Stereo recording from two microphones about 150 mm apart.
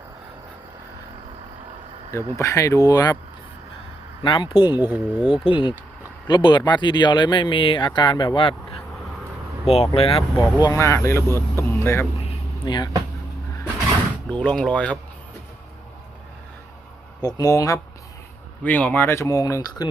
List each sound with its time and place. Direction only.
2.3 s speech: 20° left (ahead or behind)
4.2 s speech: 35° left (ahead or behind)
4.8 s speech: 5° right (ahead or behind)
5.5 s speech: 35° left (ahead or behind)
9.6 s speech: 45° left (ahead or behind)
10.4 s speech: 25° left (ahead or behind)
12.6 s speech: 30° left (ahead or behind)
14.3 s speech: 10° left (ahead or behind)
17.2 s speech: 25° left (ahead or behind)
18.6 s speech: 10° left (ahead or behind)